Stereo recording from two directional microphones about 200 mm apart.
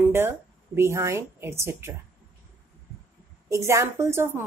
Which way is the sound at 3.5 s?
15° right (ahead or behind).